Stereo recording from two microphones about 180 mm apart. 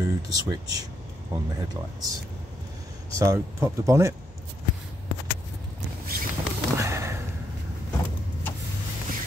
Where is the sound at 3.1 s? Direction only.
15° right (ahead or behind).